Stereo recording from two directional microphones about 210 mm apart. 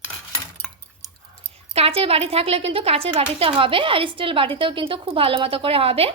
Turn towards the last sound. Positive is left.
turn(degrees=-30)  # may be behind; listen again after turning